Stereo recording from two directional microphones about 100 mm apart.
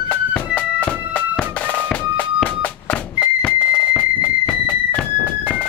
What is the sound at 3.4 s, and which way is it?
Music, 10° left (ahead or behind).